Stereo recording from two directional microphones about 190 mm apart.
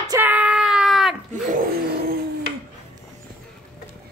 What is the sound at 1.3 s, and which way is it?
Vehicle, 45° right (ahead or behind).